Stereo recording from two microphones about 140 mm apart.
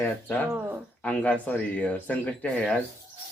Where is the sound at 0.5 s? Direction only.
15° right (ahead or behind).